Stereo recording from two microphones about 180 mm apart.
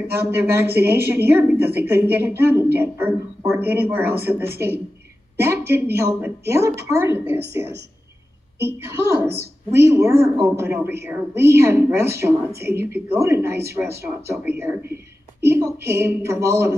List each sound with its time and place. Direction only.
0.3 s a woman's voice: 10° right (ahead or behind)
8.5 s a woman's voice: 15° right (ahead or behind)